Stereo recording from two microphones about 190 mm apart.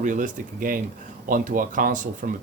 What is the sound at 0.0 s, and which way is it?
Speech, 45° right (ahead or behind).